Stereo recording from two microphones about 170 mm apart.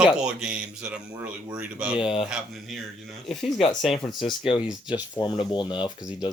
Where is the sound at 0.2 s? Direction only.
5° right (ahead or behind).